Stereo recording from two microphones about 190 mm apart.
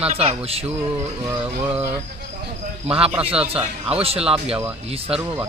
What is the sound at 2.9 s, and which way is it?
Speech, 30° right (ahead or behind).